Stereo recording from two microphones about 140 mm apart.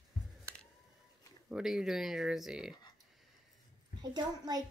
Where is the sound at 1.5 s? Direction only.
5° right (ahead or behind).